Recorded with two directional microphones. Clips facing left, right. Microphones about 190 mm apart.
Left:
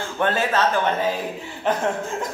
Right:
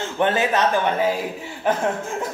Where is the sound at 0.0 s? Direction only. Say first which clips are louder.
Right 2 dB; 20° right (ahead or behind).